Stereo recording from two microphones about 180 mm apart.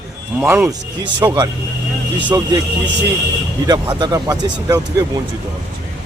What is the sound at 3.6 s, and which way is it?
Speech, 20° right (ahead or behind).